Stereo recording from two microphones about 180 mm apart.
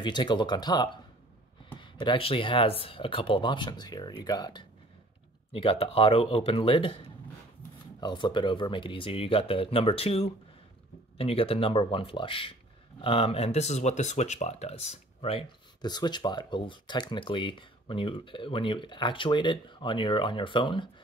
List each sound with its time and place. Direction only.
0.0 s speech: 25° left (ahead or behind)
8.0 s speech: 25° left (ahead or behind)